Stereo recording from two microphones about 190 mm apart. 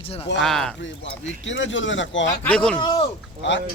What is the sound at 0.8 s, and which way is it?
Speech, 75° left (ahead or behind).